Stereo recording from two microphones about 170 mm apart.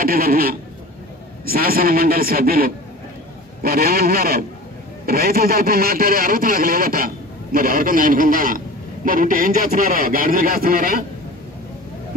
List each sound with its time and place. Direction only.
0.0 s a man's voice: 60° right (ahead or behind)